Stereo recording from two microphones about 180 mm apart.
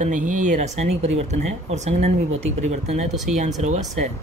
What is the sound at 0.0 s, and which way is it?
Speech, 45° right (ahead or behind).